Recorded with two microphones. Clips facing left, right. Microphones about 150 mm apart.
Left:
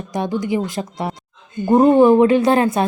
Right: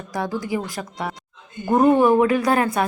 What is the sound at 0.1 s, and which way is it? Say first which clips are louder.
A woman's voice: left 4 dB; 20° left (ahead or behind).